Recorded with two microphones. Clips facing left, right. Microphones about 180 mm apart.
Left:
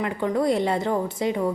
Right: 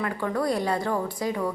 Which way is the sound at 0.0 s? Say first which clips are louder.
Left 4 dB; 20° left (ahead or behind).